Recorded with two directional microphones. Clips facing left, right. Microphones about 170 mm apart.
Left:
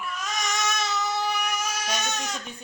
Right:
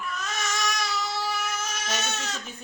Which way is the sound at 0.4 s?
20° left (ahead or behind).